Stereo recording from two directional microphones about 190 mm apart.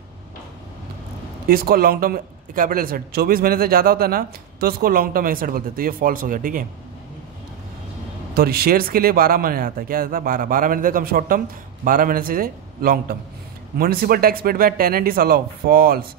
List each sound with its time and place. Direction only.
1.5 s speech: 50° right (ahead or behind)
8.4 s speech: 55° right (ahead or behind)